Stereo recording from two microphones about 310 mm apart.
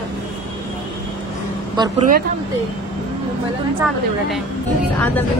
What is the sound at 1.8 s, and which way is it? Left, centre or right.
Speech, centre.